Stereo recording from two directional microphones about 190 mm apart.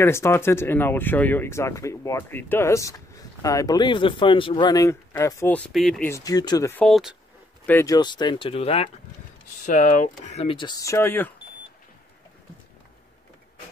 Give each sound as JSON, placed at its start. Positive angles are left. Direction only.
{"t": 0.0, "sound": "speech", "side_deg": 15}
{"t": 6.8, "sound": "speech", "side_deg": 0}
{"t": 7.6, "sound": "speech", "side_deg": 15}